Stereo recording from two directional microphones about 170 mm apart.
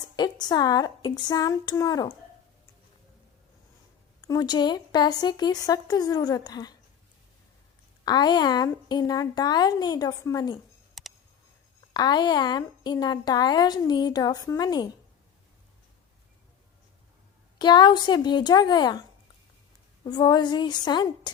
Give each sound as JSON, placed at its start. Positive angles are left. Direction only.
{"t": 0.2, "sound": "a woman's voice", "side_deg": 25}
{"t": 4.2, "sound": "a woman's voice", "side_deg": 20}
{"t": 8.0, "sound": "a woman's voice", "side_deg": 25}
{"t": 11.0, "sound": "a sound", "side_deg": 0}
{"t": 11.9, "sound": "a woman's voice", "side_deg": 25}
{"t": 17.6, "sound": "a woman's voice", "side_deg": 25}
{"t": 20.1, "sound": "a woman's voice", "side_deg": 25}